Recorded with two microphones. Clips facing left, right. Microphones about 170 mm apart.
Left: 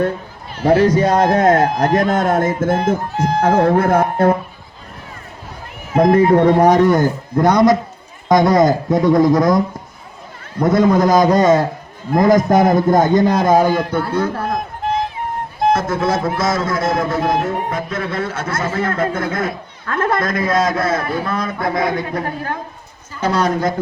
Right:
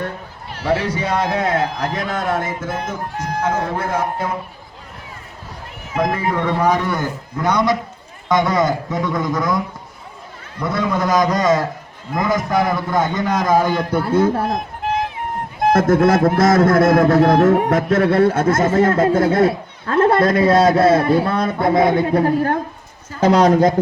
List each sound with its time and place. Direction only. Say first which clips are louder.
0.6 s a man's voice: left 7 dB; 45° left (ahead or behind)
3.4 s speech: left 8 dB; 60° left (ahead or behind)
5.9 s a man's voice: left 8 dB; 40° left (ahead or behind)
13.6 s a man's voice: left 3 dB; 10° left (ahead or behind)
14.1 s speech: right 4 dB; 25° right (ahead or behind)
15.7 s a man's voice: right 6 dB; 55° right (ahead or behind)
18.3 s speech: right 6 dB; 45° right (ahead or behind); by 22.3 s 30° right (ahead or behind)
23.4 s speech: right 4 dB; 35° right (ahead or behind)